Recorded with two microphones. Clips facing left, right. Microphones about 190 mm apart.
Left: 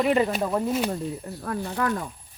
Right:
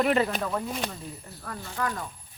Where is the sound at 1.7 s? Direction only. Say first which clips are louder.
Left 3 dB; 65° left (ahead or behind).